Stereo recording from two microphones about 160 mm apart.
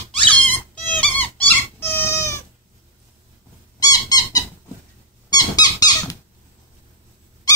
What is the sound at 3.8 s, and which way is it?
Squeak, 25° left (ahead or behind).